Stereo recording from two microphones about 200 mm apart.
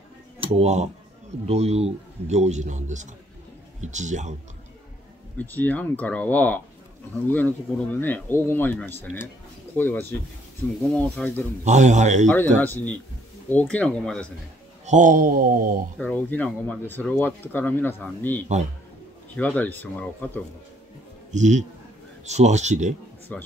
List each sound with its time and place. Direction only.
0.4 s a man's voice: 30° right (ahead or behind)
5.4 s speech: 10° left (ahead or behind)
11.6 s a man's voice: 35° right (ahead or behind)
12.3 s speech: 10° left (ahead or behind)
14.9 s a sound: 40° right (ahead or behind)
16.0 s speech: 5° left (ahead or behind)
21.3 s a man's voice: 35° right (ahead or behind)
23.3 s speech: 5° left (ahead or behind)